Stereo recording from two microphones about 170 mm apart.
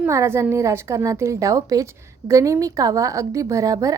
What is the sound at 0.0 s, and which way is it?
A woman's voice, 15° right (ahead or behind).